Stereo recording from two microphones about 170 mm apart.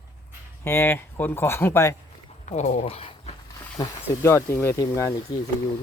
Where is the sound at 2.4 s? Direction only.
45° left (ahead or behind).